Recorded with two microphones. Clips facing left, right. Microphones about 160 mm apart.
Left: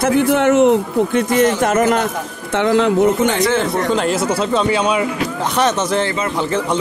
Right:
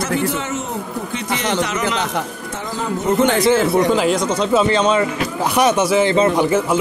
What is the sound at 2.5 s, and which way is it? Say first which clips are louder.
Speech: left 12 dB; 75° left (ahead or behind).